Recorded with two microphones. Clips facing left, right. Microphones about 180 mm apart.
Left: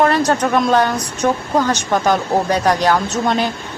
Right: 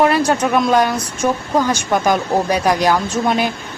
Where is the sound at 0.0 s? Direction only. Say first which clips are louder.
Even; 10° right (ahead or behind).